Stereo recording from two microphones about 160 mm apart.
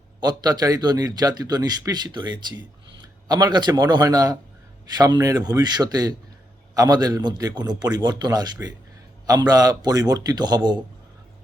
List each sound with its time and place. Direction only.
0.2 s a man's voice: 25° right (ahead or behind)